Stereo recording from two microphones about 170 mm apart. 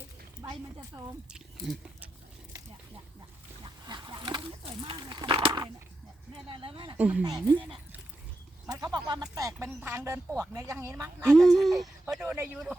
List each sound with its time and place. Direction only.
0.8 s speech: 20° right (ahead or behind)
3.6 s speech: 25° right (ahead or behind)
6.9 s speech: 10° right (ahead or behind)
7.3 s speech: 20° right (ahead or behind)
8.6 s speech: 20° right (ahead or behind)
11.3 s speech: centre (ahead or behind)